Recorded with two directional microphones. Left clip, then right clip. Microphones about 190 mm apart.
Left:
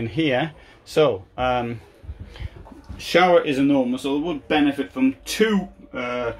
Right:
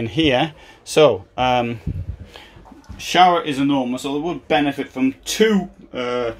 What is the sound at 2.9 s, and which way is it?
Speech, 5° right (ahead or behind).